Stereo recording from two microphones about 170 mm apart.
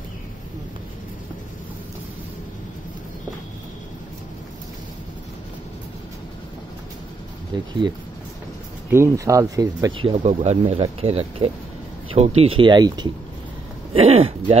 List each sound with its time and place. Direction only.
7.5 s speech: 25° right (ahead or behind)
8.9 s speech: 15° right (ahead or behind)
13.9 s speech: 35° right (ahead or behind)